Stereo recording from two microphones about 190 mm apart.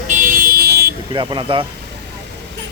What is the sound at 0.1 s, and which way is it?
Car alarm, 45° right (ahead or behind).